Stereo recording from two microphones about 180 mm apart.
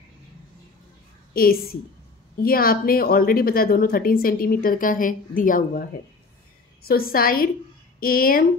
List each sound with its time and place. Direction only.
1.3 s a woman's voice: 55° left (ahead or behind)
6.9 s a woman's voice: 55° left (ahead or behind)